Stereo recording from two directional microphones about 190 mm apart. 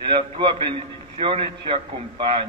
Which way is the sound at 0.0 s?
25° right (ahead or behind).